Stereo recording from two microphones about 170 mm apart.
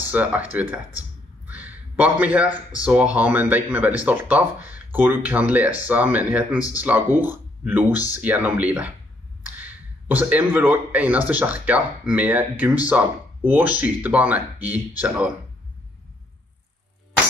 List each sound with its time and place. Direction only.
0.0 s speech: 10° right (ahead or behind)